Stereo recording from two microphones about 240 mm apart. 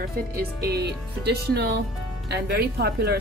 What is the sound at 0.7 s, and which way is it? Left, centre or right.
A woman's voice, right.